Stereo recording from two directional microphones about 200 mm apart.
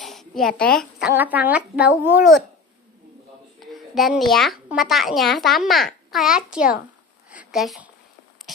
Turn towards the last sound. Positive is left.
turn(degrees=0)  # may be behind; listen again after turning